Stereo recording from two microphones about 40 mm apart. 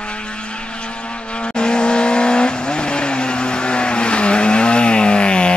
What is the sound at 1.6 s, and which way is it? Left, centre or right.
Vehicle, left.